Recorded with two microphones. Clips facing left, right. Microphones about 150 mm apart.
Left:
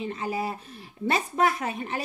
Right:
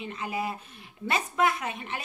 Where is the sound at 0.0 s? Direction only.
35° left (ahead or behind).